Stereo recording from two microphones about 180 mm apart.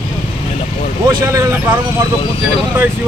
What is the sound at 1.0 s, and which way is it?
Speech, 15° right (ahead or behind).